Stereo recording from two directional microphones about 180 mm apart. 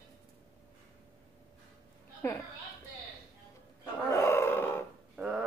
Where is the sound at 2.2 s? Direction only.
15° left (ahead or behind).